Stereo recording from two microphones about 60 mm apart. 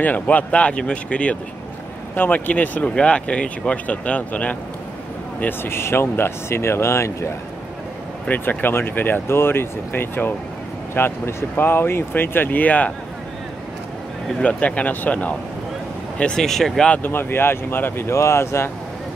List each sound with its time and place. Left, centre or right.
0.0 s speech: left
2.1 s speech: left
5.4 s speech: left
8.3 s speech: left
14.4 s speech: left
16.2 s speech: centre
17.0 s speech: left